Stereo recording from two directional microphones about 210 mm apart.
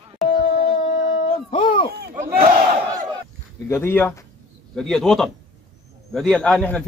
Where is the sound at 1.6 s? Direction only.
25° left (ahead or behind).